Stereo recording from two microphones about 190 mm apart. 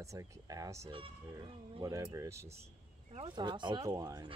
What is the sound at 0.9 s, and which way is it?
Speech, 25° right (ahead or behind).